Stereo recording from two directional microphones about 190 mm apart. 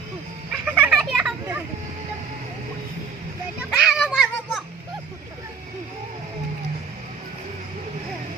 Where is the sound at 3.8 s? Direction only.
Centre (ahead or behind).